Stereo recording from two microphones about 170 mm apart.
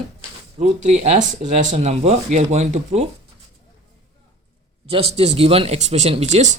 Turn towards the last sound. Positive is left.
turn(degrees=-45)  # may be behind; listen again after turning